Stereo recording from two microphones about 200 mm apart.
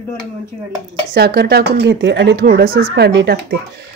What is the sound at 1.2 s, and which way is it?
Speech, 55° right (ahead or behind).